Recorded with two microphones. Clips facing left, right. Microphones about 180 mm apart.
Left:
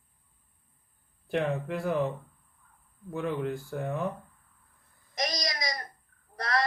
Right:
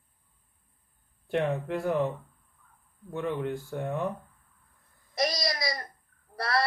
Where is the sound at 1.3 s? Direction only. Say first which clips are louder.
Right 1 dB; centre (ahead or behind).